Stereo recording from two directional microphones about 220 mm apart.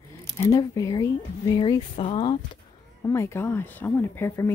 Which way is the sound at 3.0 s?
10° left (ahead or behind).